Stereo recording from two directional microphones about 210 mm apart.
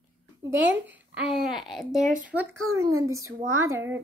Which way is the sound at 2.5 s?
70° right (ahead or behind).